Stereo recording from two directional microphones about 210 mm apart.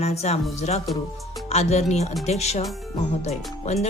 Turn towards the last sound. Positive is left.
turn(degrees=30)  # may be behind; listen again after turning